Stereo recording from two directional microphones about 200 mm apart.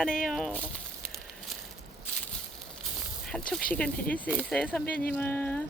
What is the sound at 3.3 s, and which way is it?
Speech, 5° left (ahead or behind).